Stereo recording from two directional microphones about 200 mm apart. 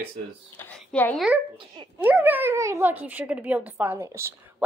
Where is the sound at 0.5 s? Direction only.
10° left (ahead or behind).